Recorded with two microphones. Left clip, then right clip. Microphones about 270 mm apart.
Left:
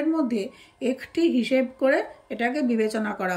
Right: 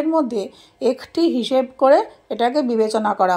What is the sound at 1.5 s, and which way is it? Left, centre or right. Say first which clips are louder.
A woman's voice: right 7 dB; right.